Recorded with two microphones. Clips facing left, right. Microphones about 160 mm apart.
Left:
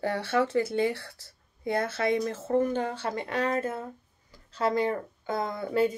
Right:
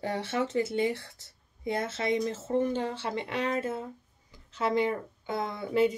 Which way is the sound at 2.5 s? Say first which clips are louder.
Left 3 dB; 50° left (ahead or behind).